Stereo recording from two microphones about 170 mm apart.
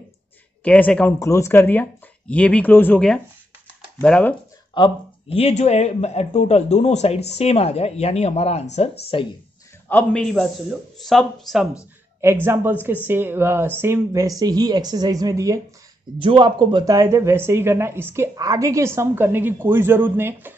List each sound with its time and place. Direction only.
0.7 s speech: 10° left (ahead or behind)
4.7 s speech: 30° left (ahead or behind)
9.8 s speech: 5° left (ahead or behind)
12.2 s speech: 15° right (ahead or behind)